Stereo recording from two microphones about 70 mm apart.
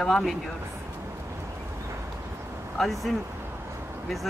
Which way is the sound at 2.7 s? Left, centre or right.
Centre.